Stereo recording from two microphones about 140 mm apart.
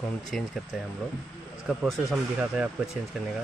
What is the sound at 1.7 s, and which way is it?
Speech, centre (ahead or behind).